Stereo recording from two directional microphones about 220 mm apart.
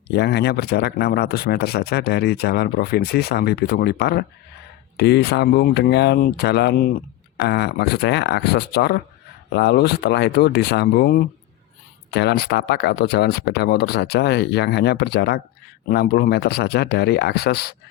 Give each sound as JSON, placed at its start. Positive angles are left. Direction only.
{"t": 0.1, "sound": "speech", "side_deg": 50}